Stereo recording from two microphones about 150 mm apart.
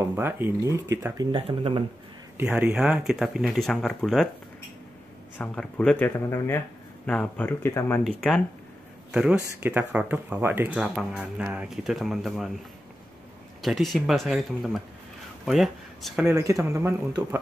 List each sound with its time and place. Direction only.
0.1 s speech: 15° right (ahead or behind)
1.3 s speech: 35° right (ahead or behind)
2.4 s speech: 5° right (ahead or behind)
5.4 s speech: 5° left (ahead or behind)
8.0 s speech: centre (ahead or behind)
13.6 s speech: centre (ahead or behind)
16.3 s speech: 20° right (ahead or behind)